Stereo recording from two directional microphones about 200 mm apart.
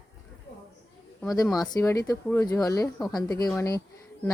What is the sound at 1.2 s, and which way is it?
Speech, 15° left (ahead or behind).